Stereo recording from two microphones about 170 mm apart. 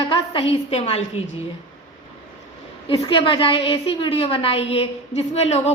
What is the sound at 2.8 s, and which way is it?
A woman's voice, 25° left (ahead or behind).